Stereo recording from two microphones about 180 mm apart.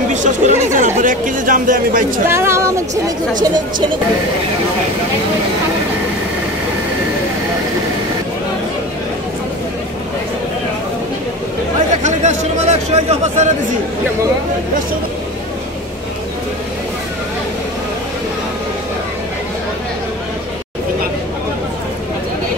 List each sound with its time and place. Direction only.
0.1 s speech: 40° right (ahead or behind)
2.3 s a woman's voice: 15° right (ahead or behind)
11.9 s speech: 40° right (ahead or behind)